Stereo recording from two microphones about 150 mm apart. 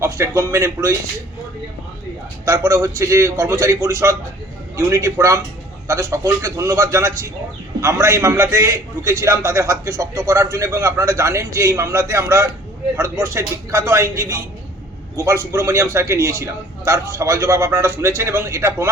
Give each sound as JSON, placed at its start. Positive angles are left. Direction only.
{"t": 0.0, "sound": "a man's voice", "side_deg": -20}
{"t": 2.4, "sound": "a man's voice", "side_deg": -20}